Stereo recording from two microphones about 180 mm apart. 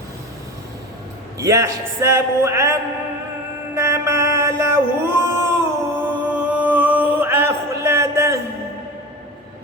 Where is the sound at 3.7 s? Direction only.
15° right (ahead or behind).